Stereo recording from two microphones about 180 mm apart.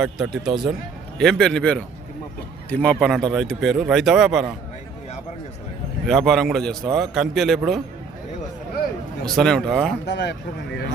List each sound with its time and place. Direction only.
0.0 s speech: 5° right (ahead or behind)
6.1 s speech: centre (ahead or behind)
9.2 s speech: 5° left (ahead or behind)
10.1 s speech: 70° left (ahead or behind)